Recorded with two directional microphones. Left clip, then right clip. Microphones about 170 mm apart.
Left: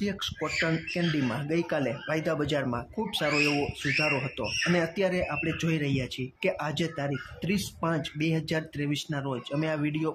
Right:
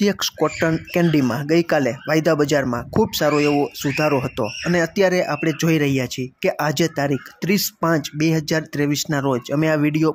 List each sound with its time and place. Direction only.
0.0 s speech: 45° right (ahead or behind)